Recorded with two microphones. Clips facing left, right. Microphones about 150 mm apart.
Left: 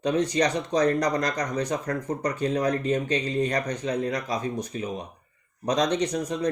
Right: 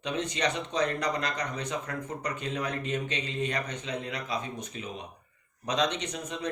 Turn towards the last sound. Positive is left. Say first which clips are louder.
# left 9 dB
turn(degrees=35)  # may be behind; listen again after turning